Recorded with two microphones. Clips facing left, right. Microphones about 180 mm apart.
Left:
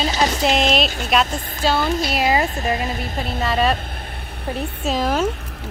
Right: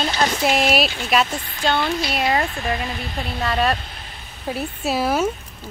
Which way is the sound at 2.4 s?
40° left (ahead or behind).